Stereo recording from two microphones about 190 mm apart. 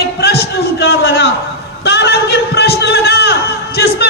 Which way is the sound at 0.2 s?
60° left (ahead or behind).